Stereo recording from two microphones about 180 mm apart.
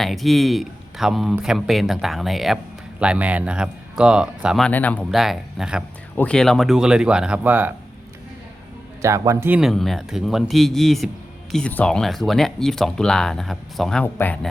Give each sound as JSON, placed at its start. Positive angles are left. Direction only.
{"t": 0.0, "sound": "speech", "side_deg": 0}
{"t": 5.1, "sound": "speech", "side_deg": 0}
{"t": 9.0, "sound": "speech", "side_deg": -15}
{"t": 9.6, "sound": "speech", "side_deg": 0}